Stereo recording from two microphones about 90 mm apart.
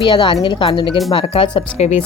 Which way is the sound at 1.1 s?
85° left.